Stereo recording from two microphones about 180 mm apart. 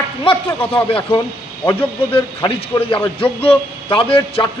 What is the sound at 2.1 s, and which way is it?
A man's voice, 30° left (ahead or behind).